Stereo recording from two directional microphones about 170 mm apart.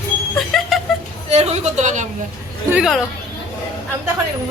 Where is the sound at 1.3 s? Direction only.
40° right (ahead or behind).